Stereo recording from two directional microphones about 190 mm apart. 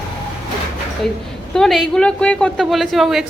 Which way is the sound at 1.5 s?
Centre (ahead or behind).